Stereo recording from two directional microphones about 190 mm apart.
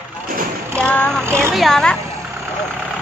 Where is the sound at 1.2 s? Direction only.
15° right (ahead or behind).